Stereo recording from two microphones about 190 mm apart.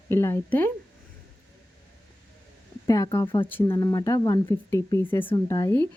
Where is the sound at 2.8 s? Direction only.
20° left (ahead or behind).